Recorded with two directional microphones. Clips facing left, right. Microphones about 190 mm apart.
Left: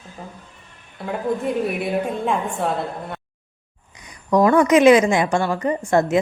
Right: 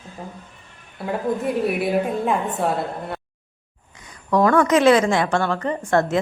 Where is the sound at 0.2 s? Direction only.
Centre (ahead or behind).